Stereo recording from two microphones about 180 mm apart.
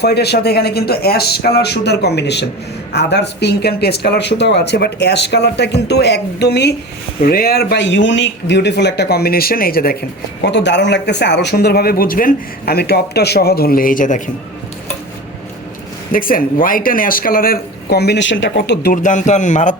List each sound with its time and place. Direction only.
0.0 s speech: 65° left (ahead or behind)
7.2 s speech: 55° left (ahead or behind)
10.4 s speech: 75° left (ahead or behind); by 14.2 s 50° left (ahead or behind)
16.1 s speech: 50° left (ahead or behind)